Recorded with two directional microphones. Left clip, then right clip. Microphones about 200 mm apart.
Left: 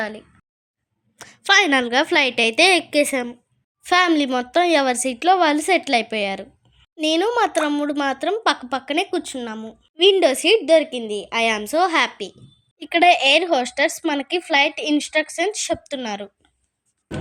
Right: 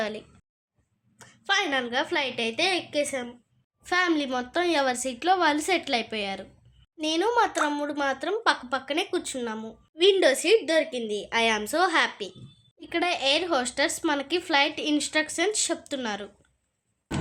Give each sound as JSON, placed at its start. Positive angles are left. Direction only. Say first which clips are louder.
{"t": 0.0, "sound": "speech", "louder": "left 3 dB", "side_deg": 5}
{"t": 1.2, "sound": "a woman's voice", "louder": "left 10 dB", "side_deg": 45}
{"t": 12.8, "sound": "speech", "louder": "left 11 dB", "side_deg": 45}